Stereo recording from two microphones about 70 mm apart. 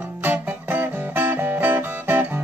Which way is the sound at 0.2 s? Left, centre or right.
Right.